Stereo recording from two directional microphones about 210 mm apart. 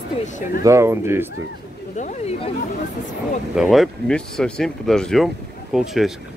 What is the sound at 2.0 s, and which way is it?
Speech, 35° left (ahead or behind).